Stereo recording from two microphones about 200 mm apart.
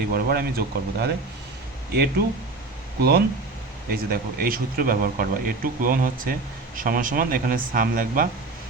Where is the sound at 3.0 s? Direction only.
50° right (ahead or behind).